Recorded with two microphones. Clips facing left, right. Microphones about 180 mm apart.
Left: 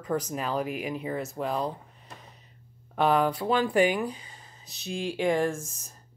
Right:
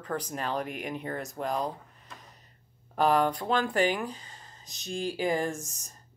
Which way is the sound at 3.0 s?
5° left (ahead or behind).